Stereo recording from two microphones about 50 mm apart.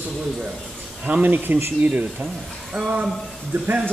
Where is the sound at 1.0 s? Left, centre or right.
Right.